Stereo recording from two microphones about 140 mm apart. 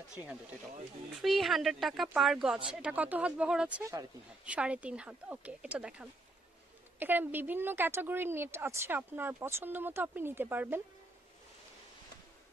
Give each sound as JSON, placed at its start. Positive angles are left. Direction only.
{"t": 0.1, "sound": "a woman's voice", "side_deg": -10}
{"t": 3.8, "sound": "speech", "side_deg": -20}
{"t": 4.5, "sound": "a woman's voice", "side_deg": -10}